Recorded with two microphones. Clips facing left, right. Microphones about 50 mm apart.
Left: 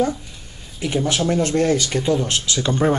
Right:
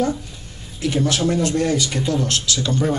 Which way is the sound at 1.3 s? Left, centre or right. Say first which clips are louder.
Left 1 dB; left.